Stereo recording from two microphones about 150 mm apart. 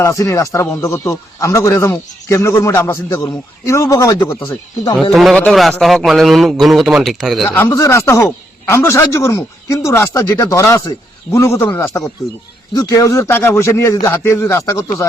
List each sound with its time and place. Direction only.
0.0 s speech: 20° left (ahead or behind)
5.1 s a man's voice: centre (ahead or behind)
7.5 s speech: 20° left (ahead or behind)